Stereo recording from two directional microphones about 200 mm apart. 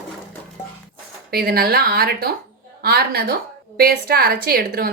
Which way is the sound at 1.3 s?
50° right (ahead or behind).